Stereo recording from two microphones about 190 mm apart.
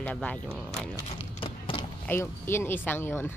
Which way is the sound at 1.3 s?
25° left (ahead or behind).